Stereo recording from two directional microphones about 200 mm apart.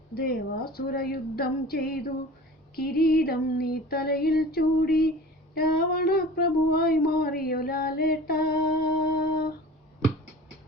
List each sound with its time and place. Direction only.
0.1 s female singing: 50° left (ahead or behind)